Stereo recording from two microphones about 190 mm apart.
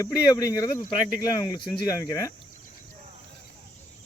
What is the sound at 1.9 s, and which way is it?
Speech, 15° left (ahead or behind).